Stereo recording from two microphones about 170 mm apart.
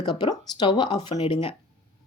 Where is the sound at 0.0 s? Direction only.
25° left (ahead or behind).